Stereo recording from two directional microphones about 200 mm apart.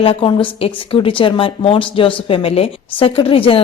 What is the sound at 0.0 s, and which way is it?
Speech, 25° left (ahead or behind).